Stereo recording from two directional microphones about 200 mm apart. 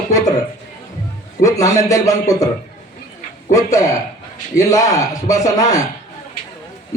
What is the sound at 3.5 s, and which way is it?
A man's voice, 15° left (ahead or behind).